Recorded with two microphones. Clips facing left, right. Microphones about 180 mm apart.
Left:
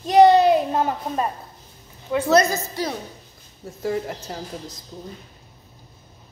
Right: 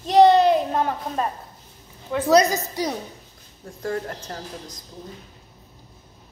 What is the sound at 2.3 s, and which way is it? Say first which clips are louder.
Speech: right 2 dB; 15° right (ahead or behind).